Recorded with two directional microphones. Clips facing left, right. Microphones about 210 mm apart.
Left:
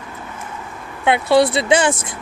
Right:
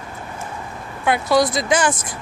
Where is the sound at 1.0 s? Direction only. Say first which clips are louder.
Left 3 dB; 25° left (ahead or behind).